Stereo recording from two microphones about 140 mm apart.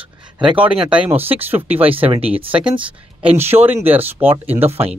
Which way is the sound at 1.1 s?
15° right (ahead or behind).